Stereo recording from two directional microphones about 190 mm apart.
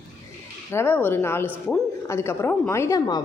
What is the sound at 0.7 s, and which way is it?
A woman's voice, 10° left (ahead or behind).